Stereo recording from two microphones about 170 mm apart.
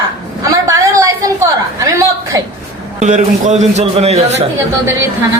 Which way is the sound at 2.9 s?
45° right (ahead or behind).